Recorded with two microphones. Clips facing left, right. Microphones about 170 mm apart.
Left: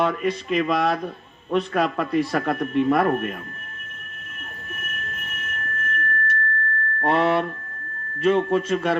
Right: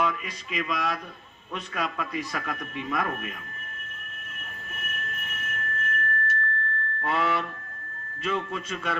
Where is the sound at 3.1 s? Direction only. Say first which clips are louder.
Left 10 dB; 45° left (ahead or behind).